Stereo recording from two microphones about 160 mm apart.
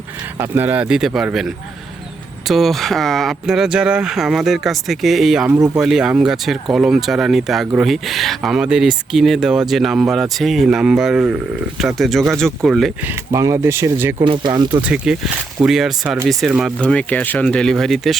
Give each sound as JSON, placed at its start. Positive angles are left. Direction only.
{"t": 0.3, "sound": "speech", "side_deg": -15}
{"t": 2.5, "sound": "speech", "side_deg": 0}
{"t": 13.1, "sound": "speech", "side_deg": -20}
{"t": 14.3, "sound": "speech", "side_deg": -25}
{"t": 14.8, "sound": "speech", "side_deg": -5}
{"t": 16.7, "sound": "speech", "side_deg": 5}